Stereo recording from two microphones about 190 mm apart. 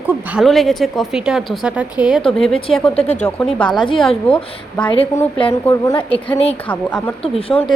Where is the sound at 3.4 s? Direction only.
10° left (ahead or behind).